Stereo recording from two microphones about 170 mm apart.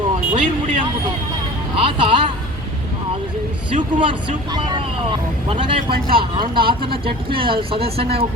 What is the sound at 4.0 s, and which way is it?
Speech, 30° right (ahead or behind).